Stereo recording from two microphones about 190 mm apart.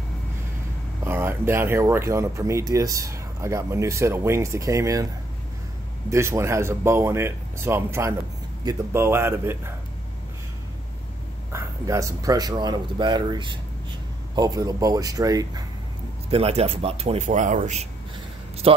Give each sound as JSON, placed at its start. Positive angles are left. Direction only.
{"t": 1.0, "sound": "speech", "side_deg": -10}
{"t": 6.0, "sound": "speech", "side_deg": -15}
{"t": 11.5, "sound": "speech", "side_deg": -15}
{"t": 16.3, "sound": "speech", "side_deg": -30}